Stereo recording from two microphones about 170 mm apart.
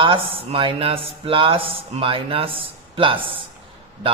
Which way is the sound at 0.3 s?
30° right (ahead or behind).